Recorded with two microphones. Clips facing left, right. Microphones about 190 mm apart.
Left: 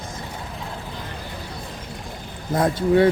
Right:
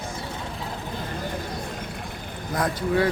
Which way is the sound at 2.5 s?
25° left (ahead or behind).